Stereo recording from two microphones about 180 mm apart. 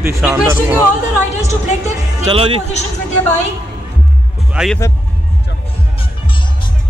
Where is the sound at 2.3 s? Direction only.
30° right (ahead or behind).